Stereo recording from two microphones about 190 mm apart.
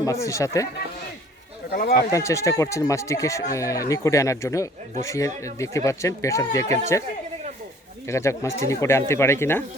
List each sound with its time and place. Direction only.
0.0 s speech: 15° left (ahead or behind)
1.7 s speech: 45° left (ahead or behind)
2.0 s speech: 15° left (ahead or behind)
8.0 s speech: 15° left (ahead or behind)